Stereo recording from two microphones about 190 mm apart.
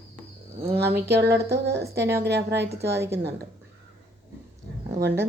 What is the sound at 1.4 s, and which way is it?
Speech, 60° right (ahead or behind).